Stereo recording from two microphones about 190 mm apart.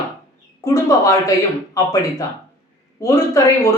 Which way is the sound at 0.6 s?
15° left (ahead or behind).